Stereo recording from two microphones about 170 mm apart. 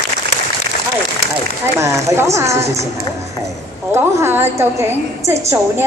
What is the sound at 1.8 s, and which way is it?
Speech, 15° right (ahead or behind).